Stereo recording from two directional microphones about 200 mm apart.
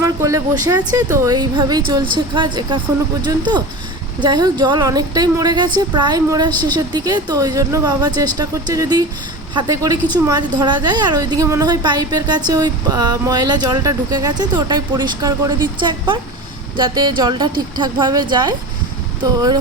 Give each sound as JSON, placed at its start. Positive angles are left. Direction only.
{"t": 0.0, "sound": "speech", "side_deg": -15}